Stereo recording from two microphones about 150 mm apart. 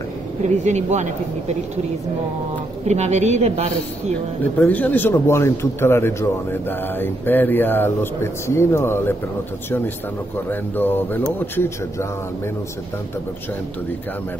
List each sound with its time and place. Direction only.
0.7 s speech: 50° right (ahead or behind)
2.9 s speech: 50° right (ahead or behind)
4.4 s a man's voice: 10° left (ahead or behind)
10.5 s a man's voice: 15° left (ahead or behind)